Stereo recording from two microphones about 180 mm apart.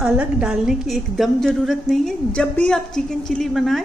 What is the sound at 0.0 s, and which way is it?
A woman's voice, 5° right (ahead or behind).